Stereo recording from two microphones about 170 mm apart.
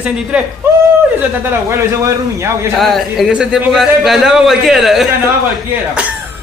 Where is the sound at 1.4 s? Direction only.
15° right (ahead or behind).